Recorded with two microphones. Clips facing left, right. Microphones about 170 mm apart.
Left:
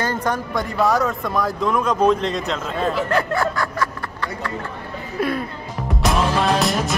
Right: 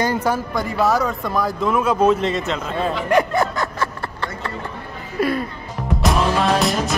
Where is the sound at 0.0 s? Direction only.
10° right (ahead or behind).